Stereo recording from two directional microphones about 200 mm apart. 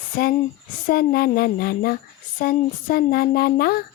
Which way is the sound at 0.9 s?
50° left (ahead or behind).